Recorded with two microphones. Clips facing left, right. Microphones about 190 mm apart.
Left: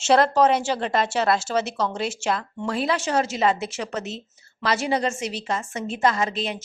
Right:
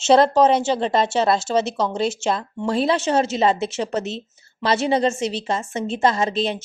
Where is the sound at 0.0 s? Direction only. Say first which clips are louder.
Right 3 dB; 25° right (ahead or behind).